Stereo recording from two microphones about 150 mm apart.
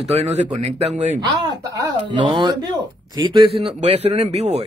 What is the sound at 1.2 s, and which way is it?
Speech, 25° right (ahead or behind).